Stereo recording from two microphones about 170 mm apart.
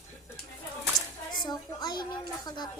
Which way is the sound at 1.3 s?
25° left (ahead or behind).